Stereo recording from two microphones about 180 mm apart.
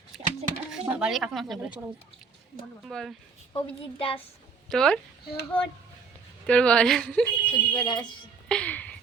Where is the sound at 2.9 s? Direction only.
Centre (ahead or behind).